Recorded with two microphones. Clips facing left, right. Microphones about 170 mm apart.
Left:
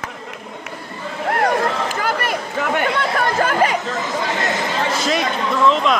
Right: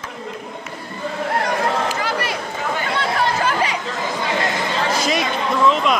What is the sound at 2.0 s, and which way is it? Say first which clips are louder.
Chatter: left 2 dB; 50° left (ahead or behind).